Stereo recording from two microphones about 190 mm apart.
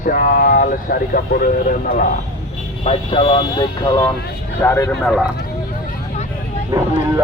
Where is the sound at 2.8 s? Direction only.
30° left (ahead or behind).